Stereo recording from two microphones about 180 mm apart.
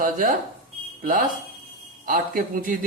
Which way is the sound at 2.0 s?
50° right (ahead or behind).